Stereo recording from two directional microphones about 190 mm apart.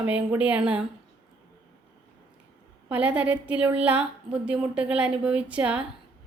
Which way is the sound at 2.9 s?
5° right (ahead or behind).